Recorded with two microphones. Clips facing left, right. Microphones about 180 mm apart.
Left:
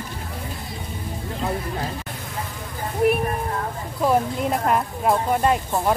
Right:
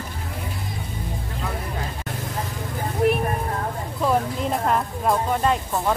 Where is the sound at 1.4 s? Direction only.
25° left (ahead or behind).